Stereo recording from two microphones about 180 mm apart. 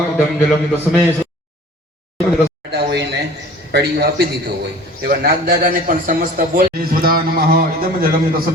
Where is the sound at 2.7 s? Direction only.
70° right (ahead or behind).